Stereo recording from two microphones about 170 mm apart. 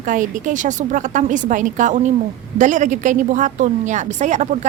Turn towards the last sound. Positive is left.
turn(degrees=-45)  # may be behind; listen again after turning